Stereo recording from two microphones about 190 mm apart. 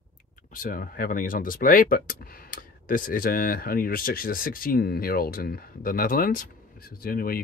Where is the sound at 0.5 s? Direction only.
50° left (ahead or behind).